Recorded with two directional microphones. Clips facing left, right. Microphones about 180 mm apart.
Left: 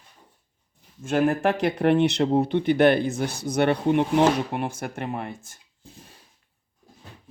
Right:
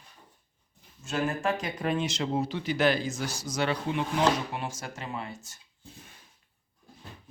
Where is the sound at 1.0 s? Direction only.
55° left (ahead or behind).